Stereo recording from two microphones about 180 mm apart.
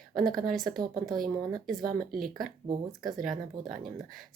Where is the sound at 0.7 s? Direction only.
50° right (ahead or behind).